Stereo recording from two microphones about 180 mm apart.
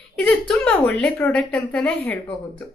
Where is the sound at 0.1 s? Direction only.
5° left (ahead or behind).